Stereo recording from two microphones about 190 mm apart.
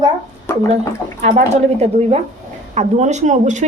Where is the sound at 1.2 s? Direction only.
35° right (ahead or behind).